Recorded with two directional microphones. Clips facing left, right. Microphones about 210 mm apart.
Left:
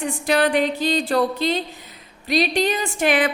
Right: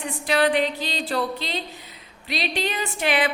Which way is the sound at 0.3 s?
45° left (ahead or behind).